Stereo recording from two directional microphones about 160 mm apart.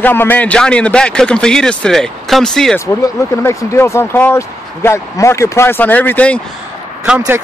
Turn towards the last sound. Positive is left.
turn(degrees=-10)  # may be behind; listen again after turning